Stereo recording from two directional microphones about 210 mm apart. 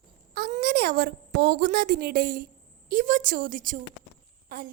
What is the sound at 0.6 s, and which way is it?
A woman's voice, 50° right (ahead or behind).